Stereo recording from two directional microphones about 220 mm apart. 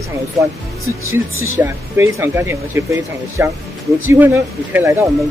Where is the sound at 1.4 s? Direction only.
10° right (ahead or behind).